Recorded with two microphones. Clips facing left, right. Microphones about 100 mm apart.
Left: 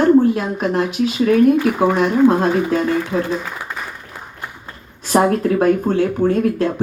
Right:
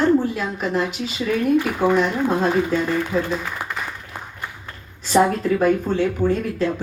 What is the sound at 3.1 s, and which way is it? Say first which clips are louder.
Speech: left 2 dB; 50° left (ahead or behind).